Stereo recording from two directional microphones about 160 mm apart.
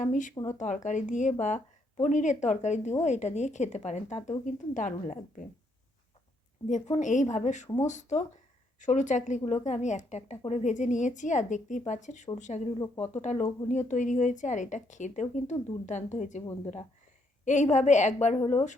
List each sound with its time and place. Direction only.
0.0 s speech: 55° left (ahead or behind)
6.7 s speech: 50° left (ahead or behind)
17.4 s speech: 50° left (ahead or behind)